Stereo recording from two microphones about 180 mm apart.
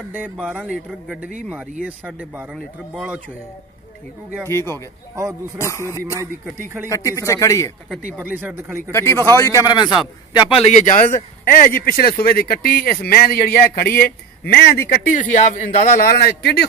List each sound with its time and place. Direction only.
0.4 s speech: 5° right (ahead or behind)
4.5 s a man's voice: 15° left (ahead or behind)
5.9 s speech: 15° right (ahead or behind)
6.9 s a man's voice: 15° left (ahead or behind)
8.2 s speech: 10° right (ahead or behind)
8.9 s a man's voice: 15° left (ahead or behind); by 16.6 s 60° left (ahead or behind)